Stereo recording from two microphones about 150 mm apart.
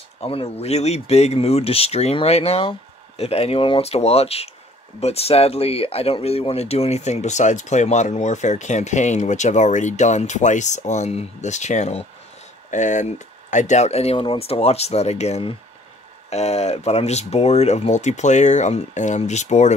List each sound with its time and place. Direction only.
0.2 s speech: 40° left (ahead or behind)